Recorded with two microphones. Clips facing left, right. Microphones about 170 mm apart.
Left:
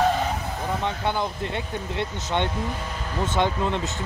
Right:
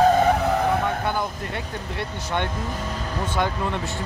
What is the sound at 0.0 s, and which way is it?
Vehicle, 55° right (ahead or behind).